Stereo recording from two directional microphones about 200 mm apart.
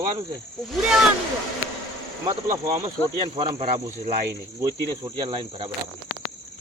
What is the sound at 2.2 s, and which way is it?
Speech, 20° right (ahead or behind).